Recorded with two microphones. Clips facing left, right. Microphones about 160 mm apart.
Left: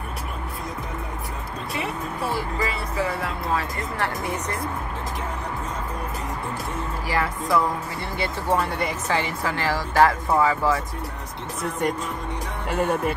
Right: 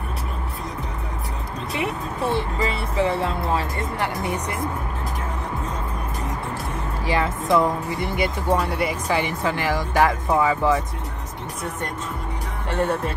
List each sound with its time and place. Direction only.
2.3 s speech: 25° right (ahead or behind)
4.0 s speech: 15° right (ahead or behind)
7.1 s speech: 20° right (ahead or behind)
12.6 s speech: 10° left (ahead or behind)